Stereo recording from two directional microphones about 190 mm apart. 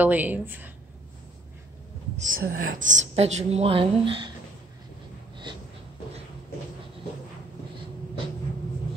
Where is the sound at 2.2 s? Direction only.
45° right (ahead or behind); by 4.3 s 25° right (ahead or behind).